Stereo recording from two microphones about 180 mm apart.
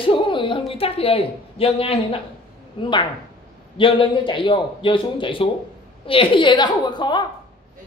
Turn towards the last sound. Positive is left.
turn(degrees=25)  # may be behind; listen again after turning